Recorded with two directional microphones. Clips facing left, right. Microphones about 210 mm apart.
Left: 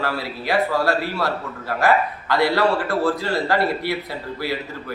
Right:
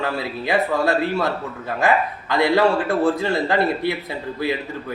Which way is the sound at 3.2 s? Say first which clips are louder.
Right 1 dB; 20° right (ahead or behind).